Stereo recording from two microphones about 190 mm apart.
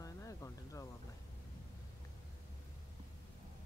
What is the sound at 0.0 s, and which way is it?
Music, 15° left (ahead or behind).